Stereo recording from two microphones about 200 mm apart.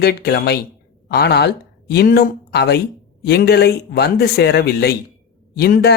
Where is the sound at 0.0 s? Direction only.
50° left (ahead or behind).